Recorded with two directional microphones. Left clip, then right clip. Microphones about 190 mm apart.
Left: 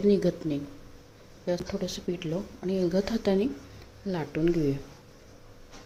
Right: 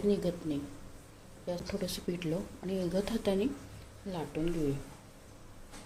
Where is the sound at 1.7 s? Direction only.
15° left (ahead or behind).